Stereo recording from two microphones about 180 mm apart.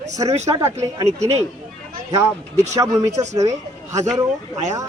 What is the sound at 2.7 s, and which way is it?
Speech, 15° right (ahead or behind).